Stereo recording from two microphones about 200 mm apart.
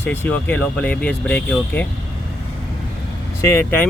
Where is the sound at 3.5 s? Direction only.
10° left (ahead or behind).